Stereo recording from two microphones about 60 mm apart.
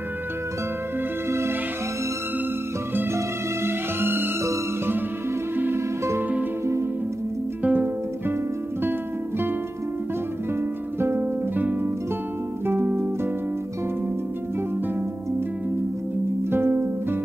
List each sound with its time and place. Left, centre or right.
3.6 s music: right
6.6 s music: right
7.6 s music: right
11.0 s music: right
11.5 s music: right
16.4 s music: right